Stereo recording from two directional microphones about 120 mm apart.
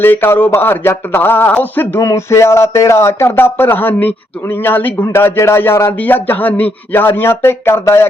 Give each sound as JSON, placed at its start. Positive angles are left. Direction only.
{"t": 0.0, "sound": "speech", "side_deg": 20}